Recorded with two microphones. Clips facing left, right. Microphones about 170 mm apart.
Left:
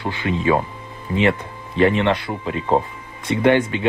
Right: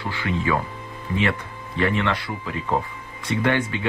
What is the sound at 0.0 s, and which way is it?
Speech, 20° left (ahead or behind).